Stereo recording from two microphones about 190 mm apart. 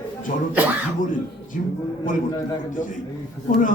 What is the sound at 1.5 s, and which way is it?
Speech, 45° left (ahead or behind).